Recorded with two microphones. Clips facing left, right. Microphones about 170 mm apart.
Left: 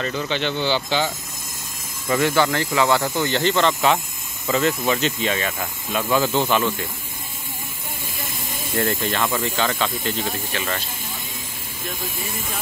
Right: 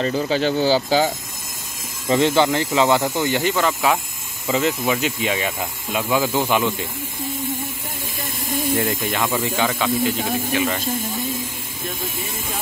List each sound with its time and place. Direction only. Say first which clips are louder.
0.0 s speech: right 5 dB; 35° right (ahead or behind)
2.0 s speech: right 3 dB; 20° right (ahead or behind)
8.7 s speech: left 4 dB; 10° right (ahead or behind)